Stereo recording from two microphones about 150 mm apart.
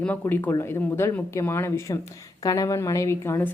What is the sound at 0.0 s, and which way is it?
Speech, 10° left (ahead or behind).